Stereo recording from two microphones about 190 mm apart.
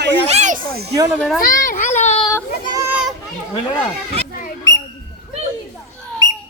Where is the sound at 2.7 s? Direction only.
10° right (ahead or behind).